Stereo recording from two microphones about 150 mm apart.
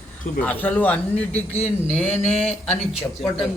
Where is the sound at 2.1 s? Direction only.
50° left (ahead or behind).